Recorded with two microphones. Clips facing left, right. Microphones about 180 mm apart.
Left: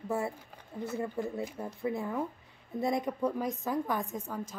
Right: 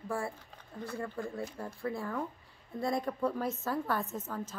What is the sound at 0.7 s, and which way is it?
A woman's voice, 20° left (ahead or behind).